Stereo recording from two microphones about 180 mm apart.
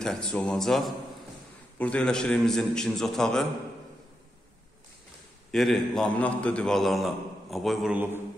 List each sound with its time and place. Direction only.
0.0 s a man's voice: 5° left (ahead or behind)
5.5 s a man's voice: centre (ahead or behind)